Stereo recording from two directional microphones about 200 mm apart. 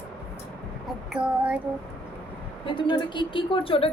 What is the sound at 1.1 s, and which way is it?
Child singing, 5° right (ahead or behind).